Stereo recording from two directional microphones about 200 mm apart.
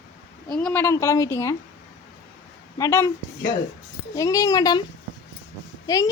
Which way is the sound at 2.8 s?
15° left (ahead or behind).